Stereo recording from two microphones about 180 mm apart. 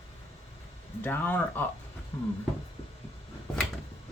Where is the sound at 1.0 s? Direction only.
10° left (ahead or behind).